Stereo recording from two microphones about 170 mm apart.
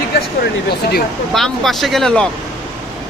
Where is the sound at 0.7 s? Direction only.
70° left (ahead or behind).